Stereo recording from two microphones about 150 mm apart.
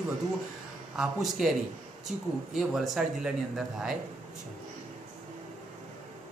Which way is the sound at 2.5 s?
Centre (ahead or behind).